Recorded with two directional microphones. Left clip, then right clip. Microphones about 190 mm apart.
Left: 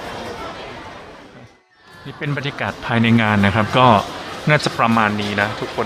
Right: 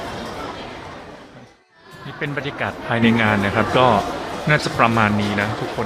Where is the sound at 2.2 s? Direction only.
20° left (ahead or behind).